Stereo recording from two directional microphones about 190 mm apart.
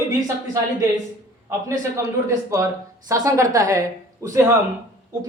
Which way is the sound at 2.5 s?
15° right (ahead or behind).